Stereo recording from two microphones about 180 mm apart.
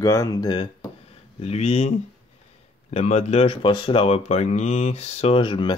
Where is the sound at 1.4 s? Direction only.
35° left (ahead or behind).